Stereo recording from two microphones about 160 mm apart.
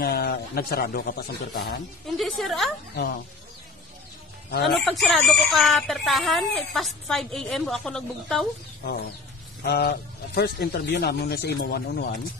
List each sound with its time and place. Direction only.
0.0 s speech: 75° left (ahead or behind)
2.0 s speech: centre (ahead or behind)
4.5 s a man's voice: 90° left
4.7 s speech: centre (ahead or behind)
9.6 s a man's voice: 85° left; by 12.2 s 65° left (ahead or behind)